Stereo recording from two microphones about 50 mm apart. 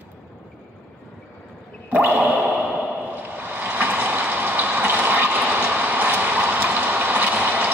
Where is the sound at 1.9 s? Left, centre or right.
Right.